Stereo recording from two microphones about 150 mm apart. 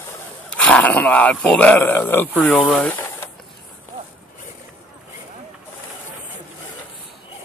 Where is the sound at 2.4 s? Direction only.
Centre (ahead or behind).